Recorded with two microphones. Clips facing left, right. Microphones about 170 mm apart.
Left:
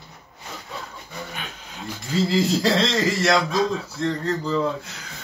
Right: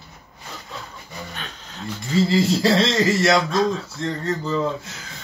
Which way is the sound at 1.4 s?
10° left (ahead or behind).